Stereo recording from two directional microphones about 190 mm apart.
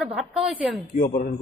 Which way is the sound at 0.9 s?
45° left (ahead or behind).